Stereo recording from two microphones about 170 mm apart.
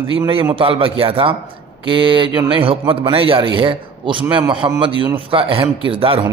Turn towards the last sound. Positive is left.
turn(degrees=-30)  # may be behind; listen again after turning